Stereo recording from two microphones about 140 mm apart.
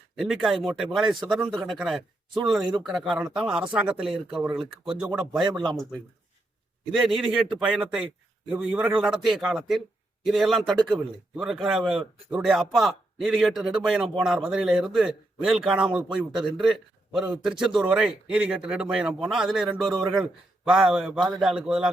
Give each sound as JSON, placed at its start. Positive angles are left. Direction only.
{"t": 0.2, "sound": "a man's voice", "side_deg": 0}
{"t": 5.4, "sound": "speech", "side_deg": -30}
{"t": 7.5, "sound": "a man's voice", "side_deg": -5}